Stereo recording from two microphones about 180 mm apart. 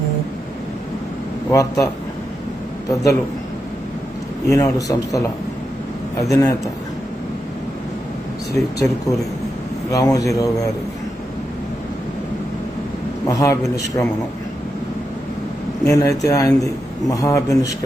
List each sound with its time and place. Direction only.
1.5 s a man's voice: 15° left (ahead or behind)
2.9 s a man's voice: 20° left (ahead or behind)
4.4 s a man's voice: 20° left (ahead or behind)
6.3 s a man's voice: 20° left (ahead or behind)
8.5 s a man's voice: 20° left (ahead or behind)
13.2 s a man's voice: 20° left (ahead or behind)
15.9 s a man's voice: 20° left (ahead or behind)